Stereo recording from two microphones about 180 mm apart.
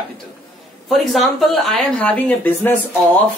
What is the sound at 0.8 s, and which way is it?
Speech, centre (ahead or behind).